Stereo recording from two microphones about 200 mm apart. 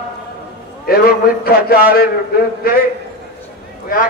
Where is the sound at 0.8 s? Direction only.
50° left (ahead or behind).